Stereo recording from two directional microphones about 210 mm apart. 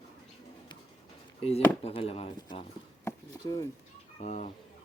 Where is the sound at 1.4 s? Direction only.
30° left (ahead or behind).